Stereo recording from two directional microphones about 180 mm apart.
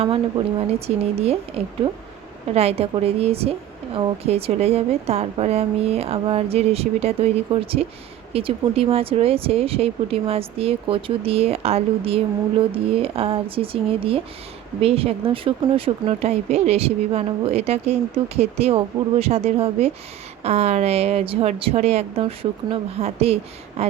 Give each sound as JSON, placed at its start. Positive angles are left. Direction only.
{"t": 0.7, "sound": "speech", "side_deg": -35}